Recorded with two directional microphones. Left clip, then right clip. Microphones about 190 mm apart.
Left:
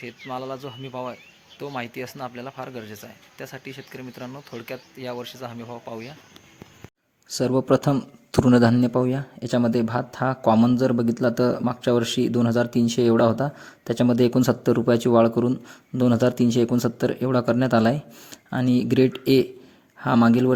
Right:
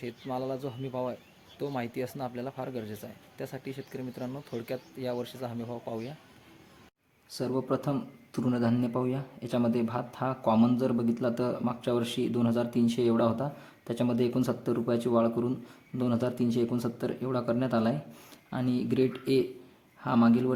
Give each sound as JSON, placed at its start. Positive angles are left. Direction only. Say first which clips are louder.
{"t": 0.0, "sound": "a man's voice", "louder": "left 3 dB", "side_deg": 0}
{"t": 5.6, "sound": "speech", "louder": "left 2 dB", "side_deg": 20}
{"t": 7.3, "sound": "a man's voice", "louder": "left 10 dB", "side_deg": 35}